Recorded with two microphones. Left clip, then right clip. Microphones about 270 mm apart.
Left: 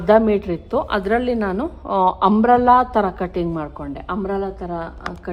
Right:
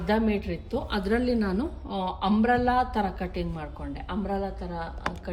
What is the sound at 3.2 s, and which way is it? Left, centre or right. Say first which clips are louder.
A woman's voice: left 11 dB; centre.